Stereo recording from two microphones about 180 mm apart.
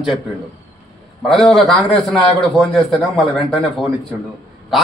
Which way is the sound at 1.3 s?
Centre (ahead or behind).